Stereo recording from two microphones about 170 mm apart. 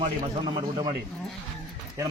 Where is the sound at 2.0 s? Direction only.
20° right (ahead or behind).